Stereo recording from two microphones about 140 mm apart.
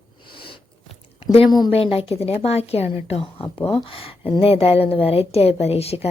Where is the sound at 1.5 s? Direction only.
30° left (ahead or behind).